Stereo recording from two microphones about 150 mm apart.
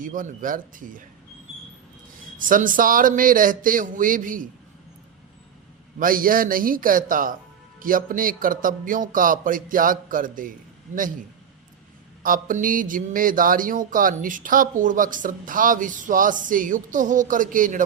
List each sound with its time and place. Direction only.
0.0 s speech: 60° right (ahead or behind)
2.4 s speech: 65° right (ahead or behind)
6.0 s a man's voice: 65° right (ahead or behind)
12.2 s speech: 65° right (ahead or behind)